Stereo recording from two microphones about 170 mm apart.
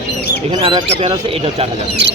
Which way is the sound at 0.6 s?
30° right (ahead or behind).